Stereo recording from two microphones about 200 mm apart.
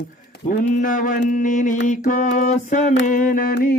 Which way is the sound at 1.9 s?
40° left (ahead or behind).